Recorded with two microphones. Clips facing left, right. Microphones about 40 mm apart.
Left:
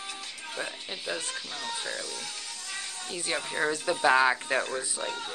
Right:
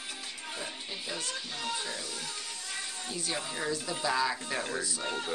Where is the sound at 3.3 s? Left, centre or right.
Left.